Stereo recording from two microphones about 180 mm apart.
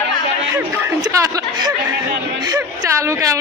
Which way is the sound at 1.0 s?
20° right (ahead or behind).